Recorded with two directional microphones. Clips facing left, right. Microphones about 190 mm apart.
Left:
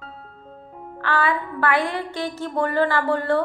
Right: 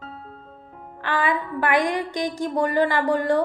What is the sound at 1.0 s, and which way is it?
A woman's voice, 20° right (ahead or behind).